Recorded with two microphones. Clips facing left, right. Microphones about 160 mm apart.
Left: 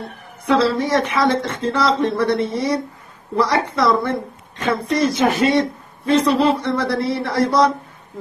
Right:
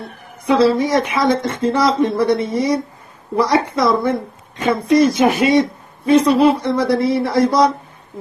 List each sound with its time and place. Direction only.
0.5 s a man's voice: 10° right (ahead or behind)